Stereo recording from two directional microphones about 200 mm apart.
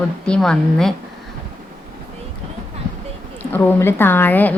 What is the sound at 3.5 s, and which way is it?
A woman's voice, 10° left (ahead or behind).